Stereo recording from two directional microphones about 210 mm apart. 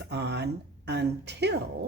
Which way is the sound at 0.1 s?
55° right (ahead or behind).